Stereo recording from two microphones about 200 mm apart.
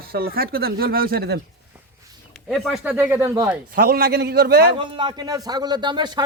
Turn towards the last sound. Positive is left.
turn(degrees=-20)  # may be behind; listen again after turning